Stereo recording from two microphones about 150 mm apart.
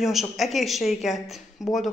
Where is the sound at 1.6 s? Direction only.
20° left (ahead or behind).